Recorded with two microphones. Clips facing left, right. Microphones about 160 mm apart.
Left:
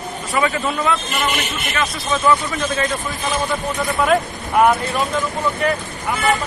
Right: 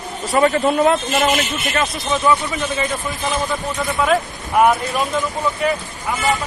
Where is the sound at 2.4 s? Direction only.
10° right (ahead or behind).